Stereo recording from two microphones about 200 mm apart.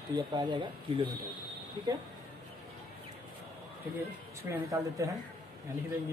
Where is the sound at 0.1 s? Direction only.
20° right (ahead or behind).